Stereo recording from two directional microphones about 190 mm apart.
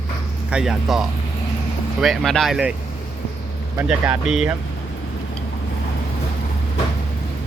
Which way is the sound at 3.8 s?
5° right (ahead or behind).